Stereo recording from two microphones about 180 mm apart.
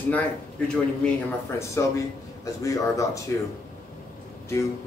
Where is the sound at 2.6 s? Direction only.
15° left (ahead or behind).